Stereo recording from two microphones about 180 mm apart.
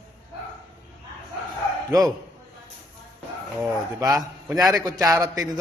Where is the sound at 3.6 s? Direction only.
20° right (ahead or behind).